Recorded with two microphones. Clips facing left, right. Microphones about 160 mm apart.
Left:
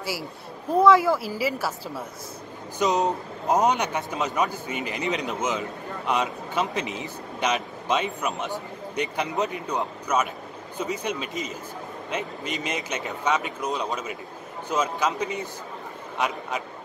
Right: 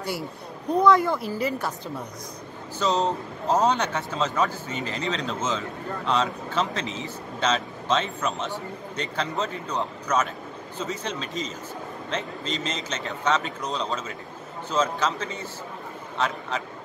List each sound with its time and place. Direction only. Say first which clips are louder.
0.0 s a woman's voice: right 1 dB; 5° left (ahead or behind)